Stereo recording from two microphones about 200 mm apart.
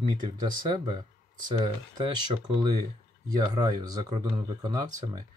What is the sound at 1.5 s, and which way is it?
Speech, 25° right (ahead or behind).